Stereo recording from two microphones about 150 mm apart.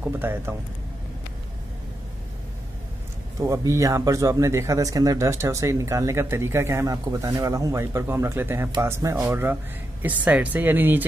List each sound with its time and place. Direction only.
0.0 s speech: 15° right (ahead or behind)
3.3 s speech: 20° right (ahead or behind)